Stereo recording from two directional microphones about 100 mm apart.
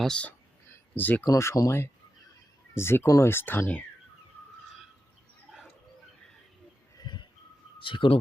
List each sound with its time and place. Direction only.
0.0 s speech: 10° left (ahead or behind)
0.3 s a sound: 20° left (ahead or behind)
1.2 s speech: 30° left (ahead or behind)
7.1 s whistling: 45° left (ahead or behind)
7.8 s speech: 55° left (ahead or behind)